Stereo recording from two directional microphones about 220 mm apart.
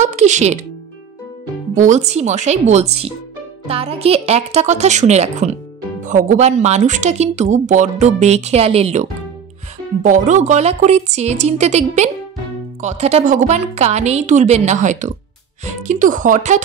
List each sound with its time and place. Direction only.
0.0 s speech: 30° right (ahead or behind)
1.8 s speech: 30° right (ahead or behind)
10.0 s speech: 35° right (ahead or behind)